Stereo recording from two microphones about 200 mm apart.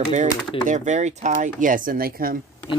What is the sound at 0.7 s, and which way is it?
Speech, 35° right (ahead or behind).